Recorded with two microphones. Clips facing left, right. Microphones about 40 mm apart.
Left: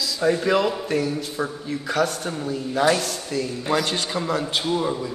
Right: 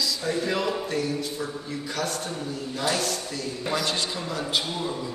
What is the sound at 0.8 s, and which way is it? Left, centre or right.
A man's voice, left.